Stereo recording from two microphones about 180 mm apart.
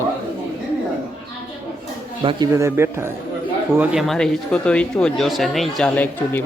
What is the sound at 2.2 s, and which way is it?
Speech, 30° right (ahead or behind).